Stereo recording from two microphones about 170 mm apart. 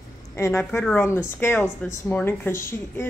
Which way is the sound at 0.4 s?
15° left (ahead or behind).